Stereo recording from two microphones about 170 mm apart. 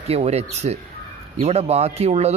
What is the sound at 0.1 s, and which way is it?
Speech, 40° right (ahead or behind).